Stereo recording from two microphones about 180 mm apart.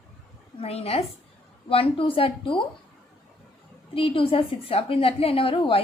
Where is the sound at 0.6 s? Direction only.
35° left (ahead or behind).